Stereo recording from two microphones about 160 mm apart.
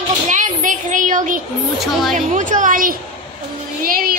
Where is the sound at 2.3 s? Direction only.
50° right (ahead or behind).